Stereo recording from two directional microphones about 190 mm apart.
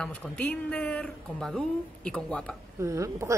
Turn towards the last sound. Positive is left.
turn(degrees=-15)  # may be behind; listen again after turning